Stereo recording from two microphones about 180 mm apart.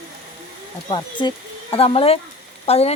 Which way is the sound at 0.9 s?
25° left (ahead or behind).